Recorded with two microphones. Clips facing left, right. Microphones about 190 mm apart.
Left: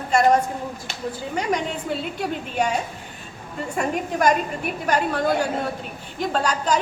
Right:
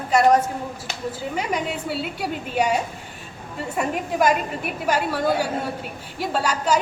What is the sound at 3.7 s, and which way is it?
A woman's voice, 5° right (ahead or behind).